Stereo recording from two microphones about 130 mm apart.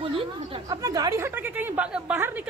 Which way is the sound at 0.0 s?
45° right (ahead or behind).